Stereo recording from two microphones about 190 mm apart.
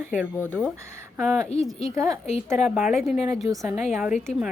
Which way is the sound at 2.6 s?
5° right (ahead or behind).